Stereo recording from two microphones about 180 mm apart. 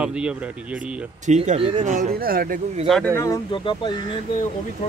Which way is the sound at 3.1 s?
15° left (ahead or behind).